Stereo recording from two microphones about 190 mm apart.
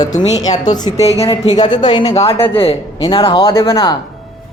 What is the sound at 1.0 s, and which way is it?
Speech, 30° left (ahead or behind).